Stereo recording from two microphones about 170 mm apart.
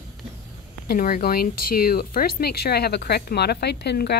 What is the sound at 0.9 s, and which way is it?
Speech, 55° left (ahead or behind).